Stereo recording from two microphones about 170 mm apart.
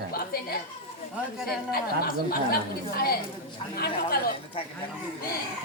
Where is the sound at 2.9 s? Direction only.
60° left (ahead or behind).